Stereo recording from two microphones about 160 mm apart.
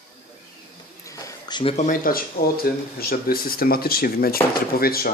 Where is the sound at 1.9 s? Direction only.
60° left (ahead or behind).